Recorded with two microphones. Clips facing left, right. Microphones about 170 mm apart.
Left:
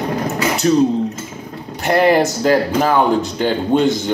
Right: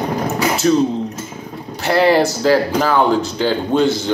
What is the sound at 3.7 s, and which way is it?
Speech, 20° left (ahead or behind).